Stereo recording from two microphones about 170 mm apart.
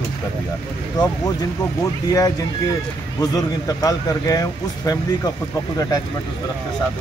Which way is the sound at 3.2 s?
20° left (ahead or behind).